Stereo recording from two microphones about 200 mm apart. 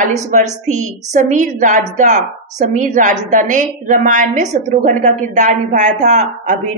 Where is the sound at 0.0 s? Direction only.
40° right (ahead or behind).